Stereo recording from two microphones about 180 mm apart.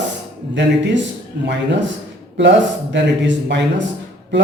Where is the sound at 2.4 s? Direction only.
85° right.